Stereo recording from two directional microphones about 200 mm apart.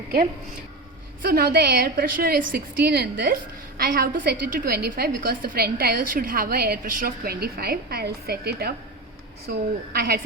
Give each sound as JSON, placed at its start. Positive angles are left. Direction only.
{"t": 1.2, "sound": "a woman's voice", "side_deg": -50}